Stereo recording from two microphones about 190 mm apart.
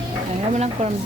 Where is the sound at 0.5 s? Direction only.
35° right (ahead or behind).